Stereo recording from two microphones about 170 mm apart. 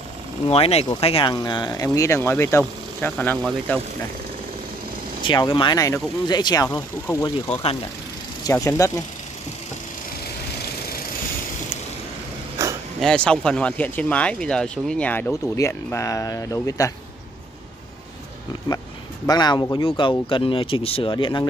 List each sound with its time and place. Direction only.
0.5 s speech: 35° left (ahead or behind); by 3.8 s 5° left (ahead or behind)
5.2 s speech: 25° left (ahead or behind)
13.0 s speech: 5° left (ahead or behind)
19.2 s speech: 25° left (ahead or behind)